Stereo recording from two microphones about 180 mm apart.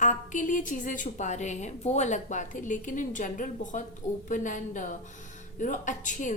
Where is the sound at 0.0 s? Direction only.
45° left (ahead or behind).